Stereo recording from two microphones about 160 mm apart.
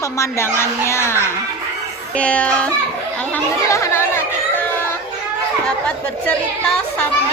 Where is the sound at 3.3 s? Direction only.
15° left (ahead or behind).